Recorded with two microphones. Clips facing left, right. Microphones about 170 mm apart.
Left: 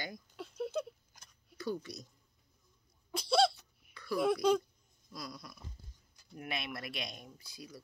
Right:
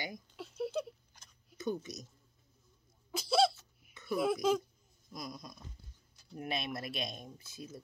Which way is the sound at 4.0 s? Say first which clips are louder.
Left 1 dB; 20° right (ahead or behind).